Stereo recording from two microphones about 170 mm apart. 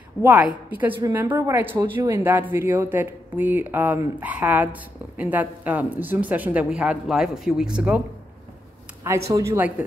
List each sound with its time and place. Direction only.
0.2 s a woman's voice: 10° right (ahead or behind)
9.3 s a woman's voice: 15° right (ahead or behind)